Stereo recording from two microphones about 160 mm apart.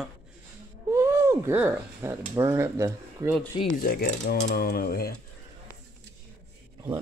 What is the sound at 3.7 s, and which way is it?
Mechanisms, 65° left (ahead or behind).